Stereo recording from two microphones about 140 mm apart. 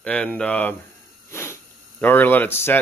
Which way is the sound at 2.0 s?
15° left (ahead or behind).